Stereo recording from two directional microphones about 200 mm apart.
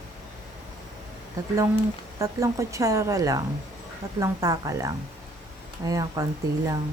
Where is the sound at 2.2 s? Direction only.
15° right (ahead or behind).